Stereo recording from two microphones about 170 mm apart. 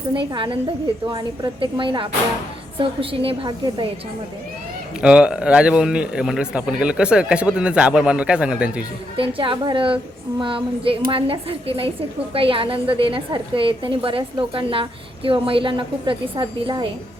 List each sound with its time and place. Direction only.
0.3 s a woman's voice: 30° right (ahead or behind)
4.9 s a man's voice: 5° right (ahead or behind)
9.1 s a woman's voice: 30° right (ahead or behind)